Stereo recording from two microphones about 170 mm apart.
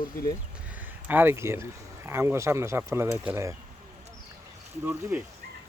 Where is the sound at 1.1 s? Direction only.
10° right (ahead or behind).